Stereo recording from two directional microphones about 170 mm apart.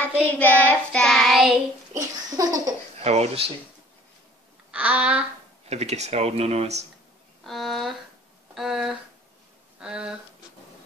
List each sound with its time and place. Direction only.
0.0 s child singing: 10° left (ahead or behind)
2.0 s a sound: 20° right (ahead or behind)
3.0 s speech: 40° right (ahead or behind)
4.6 s a sound: 5° right (ahead or behind)
5.7 s speech: 40° right (ahead or behind)
7.4 s speech: centre (ahead or behind)